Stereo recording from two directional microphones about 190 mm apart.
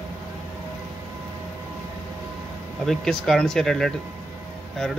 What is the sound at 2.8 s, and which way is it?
Speech, centre (ahead or behind).